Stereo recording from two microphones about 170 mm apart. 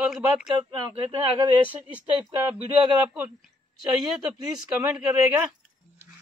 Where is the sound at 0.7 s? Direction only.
25° right (ahead or behind).